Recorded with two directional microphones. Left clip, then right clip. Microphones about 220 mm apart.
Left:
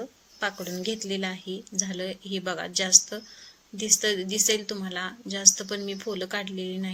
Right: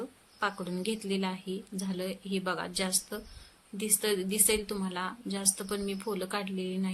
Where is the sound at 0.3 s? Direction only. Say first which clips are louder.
Left 2 dB; centre (ahead or behind).